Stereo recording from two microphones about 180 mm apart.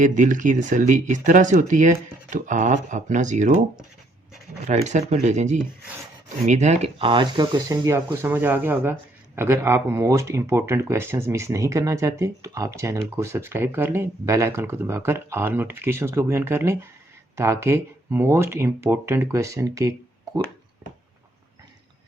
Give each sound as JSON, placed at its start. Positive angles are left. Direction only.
{"t": 0.0, "sound": "speech", "side_deg": -45}
{"t": 4.6, "sound": "speech", "side_deg": -40}